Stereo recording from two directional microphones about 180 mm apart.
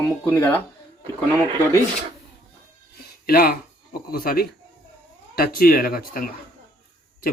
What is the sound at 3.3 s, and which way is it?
Speech, 55° left (ahead or behind).